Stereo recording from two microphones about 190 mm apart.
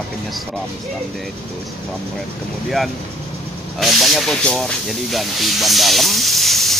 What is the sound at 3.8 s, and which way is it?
Speech, centre (ahead or behind).